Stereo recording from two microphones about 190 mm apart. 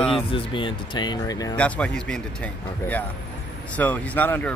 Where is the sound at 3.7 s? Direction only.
10° left (ahead or behind).